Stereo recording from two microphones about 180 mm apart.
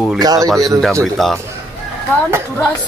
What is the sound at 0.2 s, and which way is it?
Speech, 20° right (ahead or behind).